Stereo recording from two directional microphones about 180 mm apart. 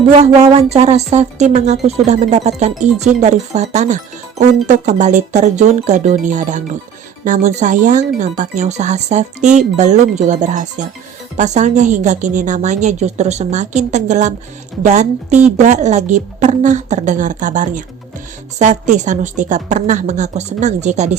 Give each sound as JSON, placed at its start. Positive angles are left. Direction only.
{"t": 0.5, "sound": "speech", "side_deg": -35}